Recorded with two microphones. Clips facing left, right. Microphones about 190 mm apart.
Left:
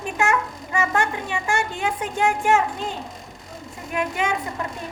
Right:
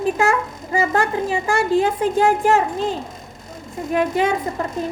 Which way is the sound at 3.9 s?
35° right (ahead or behind).